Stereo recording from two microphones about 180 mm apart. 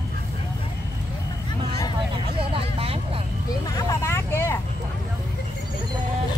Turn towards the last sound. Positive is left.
turn(degrees=15)  # may be behind; listen again after turning